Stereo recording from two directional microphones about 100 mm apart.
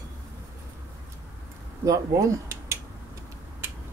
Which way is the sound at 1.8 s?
35° right (ahead or behind).